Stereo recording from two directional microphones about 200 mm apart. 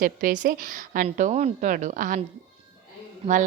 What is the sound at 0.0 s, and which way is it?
A woman's voice, 45° right (ahead or behind).